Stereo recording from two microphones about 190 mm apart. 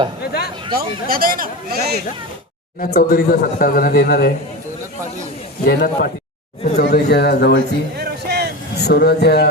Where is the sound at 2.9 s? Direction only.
50° left (ahead or behind).